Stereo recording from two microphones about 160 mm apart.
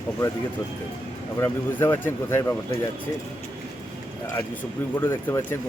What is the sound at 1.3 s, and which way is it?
Speech, 15° left (ahead or behind).